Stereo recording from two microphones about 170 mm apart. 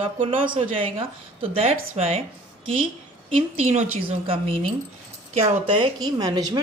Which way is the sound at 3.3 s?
35° right (ahead or behind).